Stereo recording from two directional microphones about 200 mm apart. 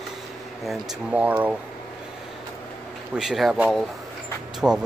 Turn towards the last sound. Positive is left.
turn(degrees=0)  # may be behind; listen again after turning